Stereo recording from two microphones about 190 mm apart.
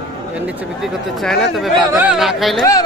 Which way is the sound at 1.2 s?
Centre (ahead or behind).